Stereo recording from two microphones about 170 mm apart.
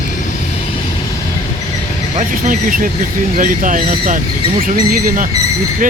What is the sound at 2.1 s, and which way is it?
Speech, 55° right (ahead or behind).